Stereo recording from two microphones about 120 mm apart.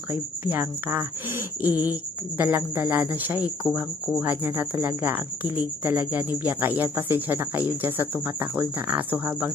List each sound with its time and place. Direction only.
0.1 s a woman's voice: 20° right (ahead or behind)